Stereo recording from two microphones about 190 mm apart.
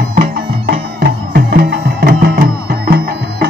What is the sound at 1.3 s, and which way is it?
Music, 55° right (ahead or behind).